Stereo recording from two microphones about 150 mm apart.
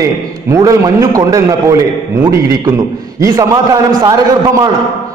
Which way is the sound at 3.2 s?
25° right (ahead or behind).